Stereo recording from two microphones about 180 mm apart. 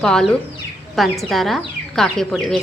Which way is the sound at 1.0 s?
Centre (ahead or behind).